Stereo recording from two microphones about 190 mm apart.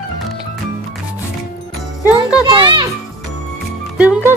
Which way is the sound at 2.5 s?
25° right (ahead or behind).